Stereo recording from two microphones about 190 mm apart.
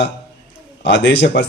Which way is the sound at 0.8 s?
65° left (ahead or behind).